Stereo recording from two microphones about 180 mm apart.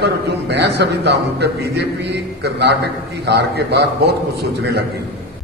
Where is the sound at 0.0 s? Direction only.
70° right (ahead or behind).